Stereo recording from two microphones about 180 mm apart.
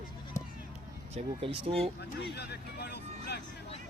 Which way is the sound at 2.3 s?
65° left (ahead or behind).